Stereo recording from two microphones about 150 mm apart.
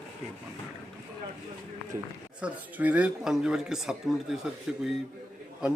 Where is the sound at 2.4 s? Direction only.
10° right (ahead or behind).